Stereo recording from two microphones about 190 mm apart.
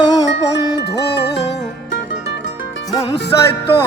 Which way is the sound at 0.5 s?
60° left (ahead or behind).